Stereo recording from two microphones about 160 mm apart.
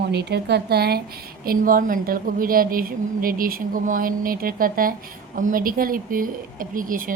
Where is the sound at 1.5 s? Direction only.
60° right (ahead or behind).